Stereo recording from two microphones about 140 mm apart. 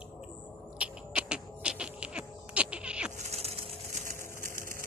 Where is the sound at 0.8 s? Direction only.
5° right (ahead or behind).